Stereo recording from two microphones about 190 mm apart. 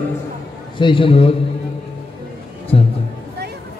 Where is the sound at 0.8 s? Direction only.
25° left (ahead or behind).